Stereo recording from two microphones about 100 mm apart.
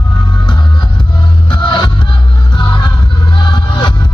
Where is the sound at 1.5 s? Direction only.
50° left (ahead or behind).